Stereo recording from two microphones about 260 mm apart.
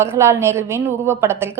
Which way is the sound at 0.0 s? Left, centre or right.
Centre.